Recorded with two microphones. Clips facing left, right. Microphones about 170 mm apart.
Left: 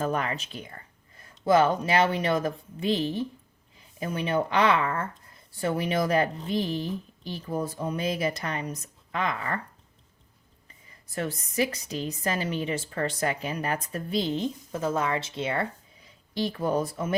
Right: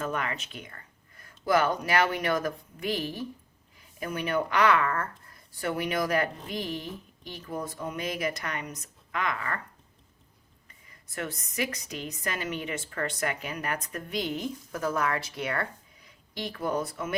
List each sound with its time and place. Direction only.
0.0 s a woman's voice: 35° left (ahead or behind)
11.1 s a woman's voice: 30° left (ahead or behind)